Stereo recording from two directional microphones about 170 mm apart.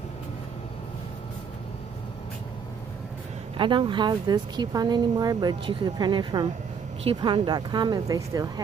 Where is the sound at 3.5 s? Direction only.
30° right (ahead or behind).